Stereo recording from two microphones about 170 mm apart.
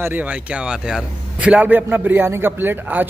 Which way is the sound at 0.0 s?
10° right (ahead or behind).